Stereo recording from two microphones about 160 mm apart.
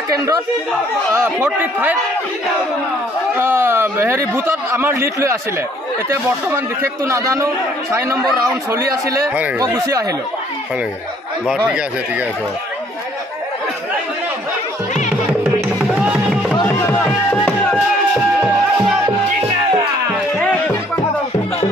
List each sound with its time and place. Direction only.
0.1 s a man's voice: 20° right (ahead or behind)
3.3 s speech: 15° right (ahead or behind)
7.1 s a man's voice: 20° right (ahead or behind)
8.6 s speech: 20° right (ahead or behind)
11.4 s speech: centre (ahead or behind)
15.4 s music: 5° right (ahead or behind)
16.6 s music: 15° left (ahead or behind)
19.0 s music: 30° right (ahead or behind)
20.3 s a sound: centre (ahead or behind)